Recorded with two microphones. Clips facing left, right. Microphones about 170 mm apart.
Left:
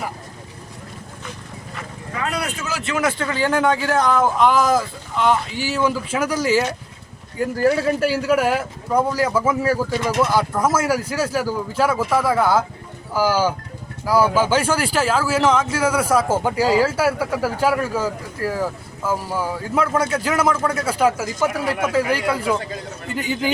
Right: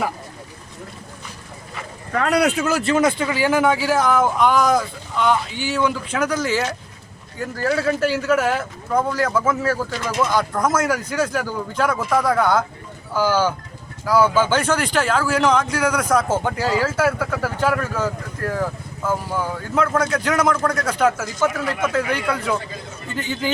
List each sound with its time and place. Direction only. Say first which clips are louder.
2.1 s speech: right 8 dB; 70° right (ahead or behind)
3.0 s speech: right 2 dB; 15° right (ahead or behind); by 23.5 s 10° left (ahead or behind)